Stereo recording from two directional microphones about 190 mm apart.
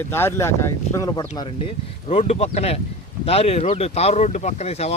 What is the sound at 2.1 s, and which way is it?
Speech, 35° left (ahead or behind).